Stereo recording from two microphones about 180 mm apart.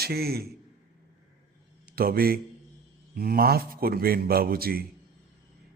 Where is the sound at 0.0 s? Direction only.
60° right (ahead or behind).